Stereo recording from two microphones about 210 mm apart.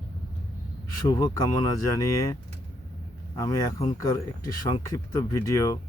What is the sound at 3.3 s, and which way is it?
Speech, 15° left (ahead or behind).